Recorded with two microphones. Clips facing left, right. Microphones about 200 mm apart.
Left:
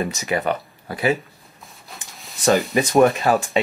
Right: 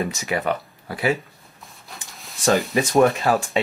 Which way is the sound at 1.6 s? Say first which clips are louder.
Even; centre (ahead or behind).